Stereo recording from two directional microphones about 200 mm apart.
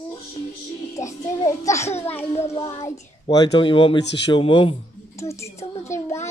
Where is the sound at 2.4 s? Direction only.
20° left (ahead or behind).